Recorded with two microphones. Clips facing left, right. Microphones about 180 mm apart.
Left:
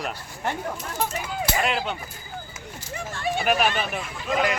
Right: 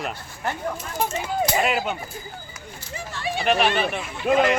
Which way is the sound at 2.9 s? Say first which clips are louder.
Left 1 dB; 50° left (ahead or behind).